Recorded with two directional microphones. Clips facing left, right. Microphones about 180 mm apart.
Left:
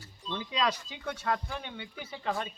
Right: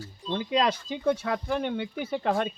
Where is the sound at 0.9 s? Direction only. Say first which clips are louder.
Right 7 dB; 55° right (ahead or behind).